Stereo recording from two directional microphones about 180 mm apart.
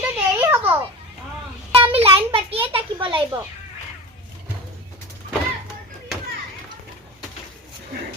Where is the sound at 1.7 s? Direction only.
30° right (ahead or behind).